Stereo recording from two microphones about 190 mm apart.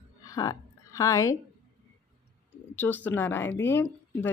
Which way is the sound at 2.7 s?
10° left (ahead or behind).